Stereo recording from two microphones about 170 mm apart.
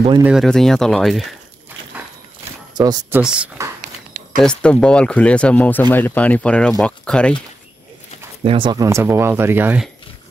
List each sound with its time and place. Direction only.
0.2 s speech: 5° right (ahead or behind)
2.7 s speech: 20° right (ahead or behind)
3.2 s speech: 5° right (ahead or behind)
4.4 s speech: 5° left (ahead or behind)
8.5 s speech: 30° right (ahead or behind); by 9.8 s 10° right (ahead or behind)